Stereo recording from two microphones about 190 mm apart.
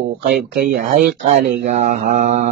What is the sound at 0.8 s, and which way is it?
Speech, 40° right (ahead or behind).